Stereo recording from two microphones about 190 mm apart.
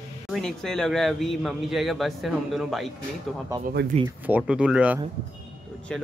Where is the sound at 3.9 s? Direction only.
35° right (ahead or behind).